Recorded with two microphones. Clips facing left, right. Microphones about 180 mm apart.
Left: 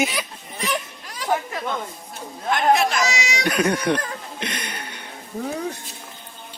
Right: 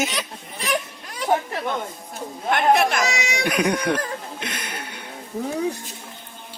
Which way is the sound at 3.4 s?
10° right (ahead or behind).